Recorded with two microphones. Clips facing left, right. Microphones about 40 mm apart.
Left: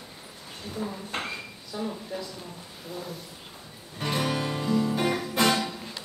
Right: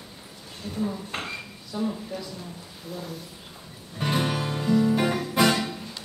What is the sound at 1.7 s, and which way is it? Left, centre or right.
Speech, centre.